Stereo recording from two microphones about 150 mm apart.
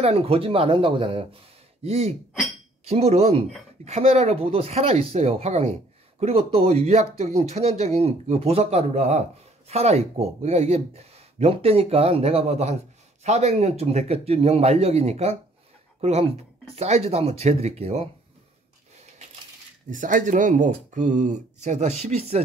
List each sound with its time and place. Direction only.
0.0 s speech: 40° right (ahead or behind)
19.9 s speech: 60° right (ahead or behind); by 22.4 s 45° right (ahead or behind)